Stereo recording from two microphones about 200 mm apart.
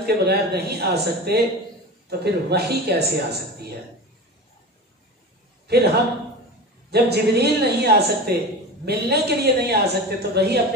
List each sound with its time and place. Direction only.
0.0 s a woman's voice: 55° right (ahead or behind)
5.7 s a man's voice: 55° right (ahead or behind)
6.9 s a woman's voice: 55° right (ahead or behind)